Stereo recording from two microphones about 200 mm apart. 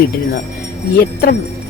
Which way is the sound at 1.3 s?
50° left (ahead or behind).